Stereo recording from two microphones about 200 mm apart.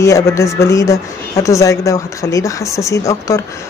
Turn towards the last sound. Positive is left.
turn(degrees=15)  # may be behind; listen again after turning